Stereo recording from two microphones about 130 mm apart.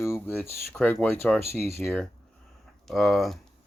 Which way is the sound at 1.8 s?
Centre (ahead or behind).